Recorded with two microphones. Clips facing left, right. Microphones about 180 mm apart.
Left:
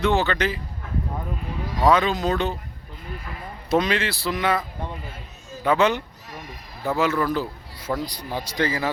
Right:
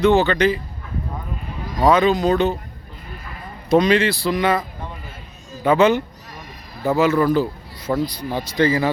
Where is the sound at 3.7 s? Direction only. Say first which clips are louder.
Right 6 dB; centre (ahead or behind).